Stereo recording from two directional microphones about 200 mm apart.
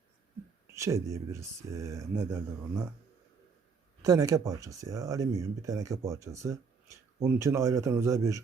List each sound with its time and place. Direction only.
0.7 s speech: 15° right (ahead or behind)
4.0 s speech: 15° right (ahead or behind)